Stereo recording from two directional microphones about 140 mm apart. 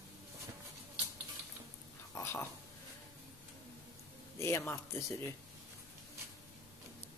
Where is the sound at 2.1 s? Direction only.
20° left (ahead or behind).